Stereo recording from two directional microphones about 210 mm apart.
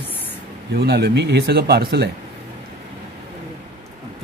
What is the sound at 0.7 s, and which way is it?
Speech, 50° right (ahead or behind).